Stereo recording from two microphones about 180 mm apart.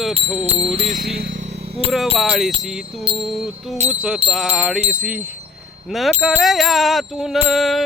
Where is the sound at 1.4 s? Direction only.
35° right (ahead or behind).